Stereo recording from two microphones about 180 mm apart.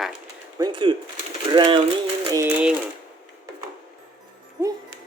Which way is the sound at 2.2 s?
20° right (ahead or behind).